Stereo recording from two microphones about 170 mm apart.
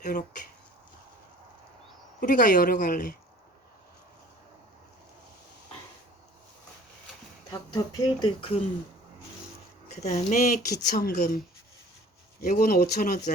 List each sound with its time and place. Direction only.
0.0 s speech: 50° left (ahead or behind)
2.2 s speech: 50° left (ahead or behind)
7.7 s speech: 25° left (ahead or behind)
9.9 s speech: 40° left (ahead or behind)
10.8 s speech: 70° left (ahead or behind)
12.4 s speech: 60° left (ahead or behind)